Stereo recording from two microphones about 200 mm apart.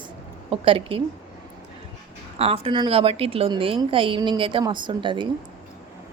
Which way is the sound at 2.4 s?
30° right (ahead or behind).